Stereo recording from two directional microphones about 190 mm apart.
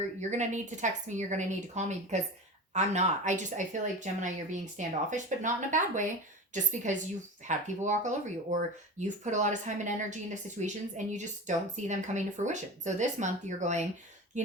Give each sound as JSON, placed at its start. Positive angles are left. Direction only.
{"t": 0.2, "sound": "speech", "side_deg": -40}